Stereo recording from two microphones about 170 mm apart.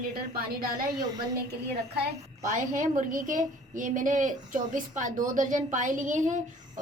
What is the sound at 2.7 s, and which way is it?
A woman's voice, 50° right (ahead or behind).